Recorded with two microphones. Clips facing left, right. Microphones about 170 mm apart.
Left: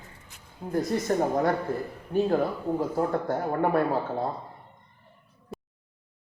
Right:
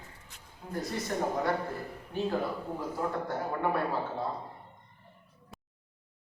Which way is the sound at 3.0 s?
45° left (ahead or behind).